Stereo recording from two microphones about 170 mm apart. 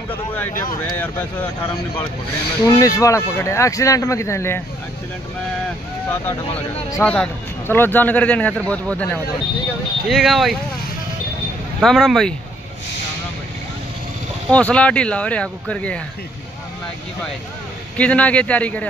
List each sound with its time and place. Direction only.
0.9 s speech: 10° left (ahead or behind)
2.6 s speech: 20° left (ahead or behind)
6.2 s speech: 10° left (ahead or behind)
11.8 s speech: centre (ahead or behind)
14.5 s speech: 5° left (ahead or behind)
17.9 s speech: 10° left (ahead or behind)